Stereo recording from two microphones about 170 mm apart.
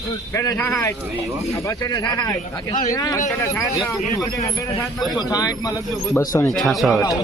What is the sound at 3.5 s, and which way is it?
Speech, centre (ahead or behind).